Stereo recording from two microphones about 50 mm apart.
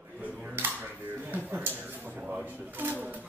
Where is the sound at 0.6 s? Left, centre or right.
Right.